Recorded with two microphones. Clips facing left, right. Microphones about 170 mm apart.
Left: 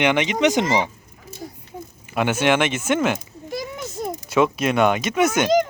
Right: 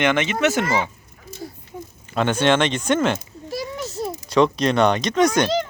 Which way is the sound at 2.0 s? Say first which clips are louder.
Right 1 dB; 10° left (ahead or behind).